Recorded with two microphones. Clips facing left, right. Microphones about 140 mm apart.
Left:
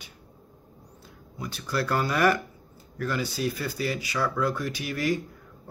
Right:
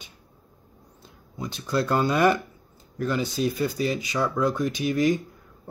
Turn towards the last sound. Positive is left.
turn(degrees=-20)  # may be behind; listen again after turning